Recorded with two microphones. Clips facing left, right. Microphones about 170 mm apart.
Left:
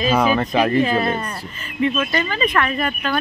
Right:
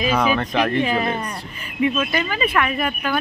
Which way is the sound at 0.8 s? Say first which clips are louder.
Left 2 dB; 10° right (ahead or behind).